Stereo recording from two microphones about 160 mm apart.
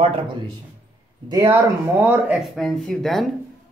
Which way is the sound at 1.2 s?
20° right (ahead or behind).